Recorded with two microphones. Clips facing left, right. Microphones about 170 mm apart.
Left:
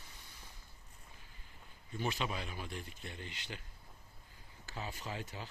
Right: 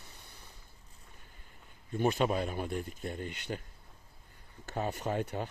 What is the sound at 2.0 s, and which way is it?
Speech, 50° right (ahead or behind).